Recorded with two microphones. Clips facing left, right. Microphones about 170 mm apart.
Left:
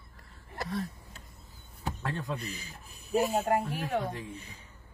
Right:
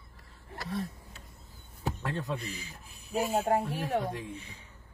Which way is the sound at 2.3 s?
40° left (ahead or behind).